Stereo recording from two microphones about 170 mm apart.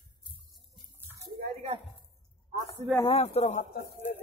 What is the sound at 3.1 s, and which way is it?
Speech, 40° left (ahead or behind).